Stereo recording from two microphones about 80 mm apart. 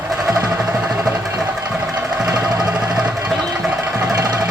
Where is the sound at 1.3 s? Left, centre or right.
Centre.